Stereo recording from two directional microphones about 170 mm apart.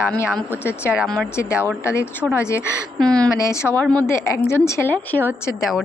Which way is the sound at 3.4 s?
15° left (ahead or behind).